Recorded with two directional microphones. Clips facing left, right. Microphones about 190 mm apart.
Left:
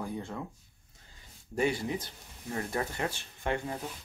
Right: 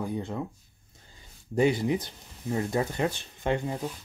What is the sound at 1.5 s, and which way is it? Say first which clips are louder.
Speech: right 6 dB; 25° right (ahead or behind).